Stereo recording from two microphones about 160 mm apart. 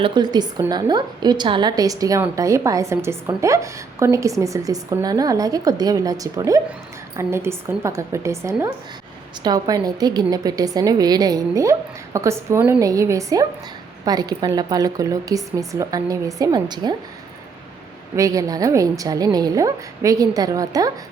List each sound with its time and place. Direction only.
0.0 s a woman's voice: 25° right (ahead or behind)
18.2 s a woman's voice: 20° right (ahead or behind)